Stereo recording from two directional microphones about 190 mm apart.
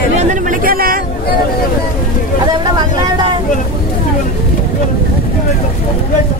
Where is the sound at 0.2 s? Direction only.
40° right (ahead or behind).